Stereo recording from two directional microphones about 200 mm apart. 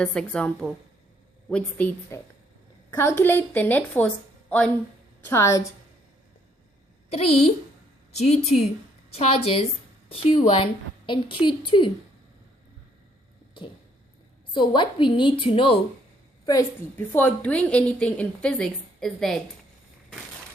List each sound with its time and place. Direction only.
0.0 s a woman's voice: 5° left (ahead or behind)
7.1 s a woman's voice: 30° left (ahead or behind)
14.5 s a woman's voice: 25° left (ahead or behind)
17.1 s a woman's voice: 10° left (ahead or behind)